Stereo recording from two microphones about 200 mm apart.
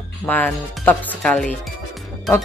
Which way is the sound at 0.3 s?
10° left (ahead or behind).